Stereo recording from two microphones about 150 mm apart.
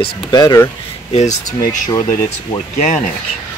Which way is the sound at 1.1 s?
50° left (ahead or behind).